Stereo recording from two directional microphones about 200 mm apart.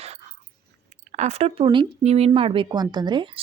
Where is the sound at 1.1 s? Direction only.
35° right (ahead or behind).